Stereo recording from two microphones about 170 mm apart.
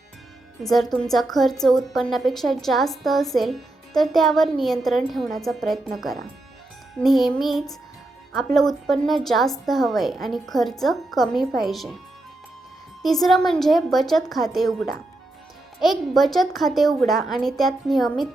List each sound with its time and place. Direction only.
0.6 s a woman's voice: centre (ahead or behind)
13.0 s a woman's voice: centre (ahead or behind)